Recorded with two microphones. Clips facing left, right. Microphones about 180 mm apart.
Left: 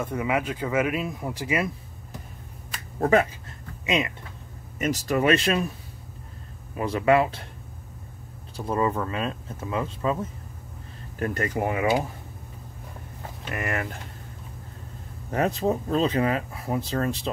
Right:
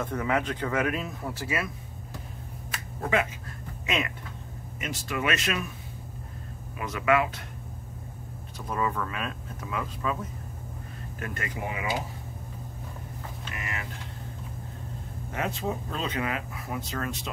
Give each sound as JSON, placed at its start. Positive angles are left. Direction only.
{"t": 0.0, "sound": "speech", "side_deg": 10}
{"t": 3.0, "sound": "speech", "side_deg": 45}
{"t": 3.8, "sound": "speech", "side_deg": 15}
{"t": 4.7, "sound": "speech", "side_deg": 40}
{"t": 6.8, "sound": "speech", "side_deg": 30}
{"t": 8.5, "sound": "speech", "side_deg": 30}
{"t": 11.1, "sound": "speech", "side_deg": 40}
{"t": 13.5, "sound": "speech", "side_deg": 55}
{"t": 15.3, "sound": "speech", "side_deg": 40}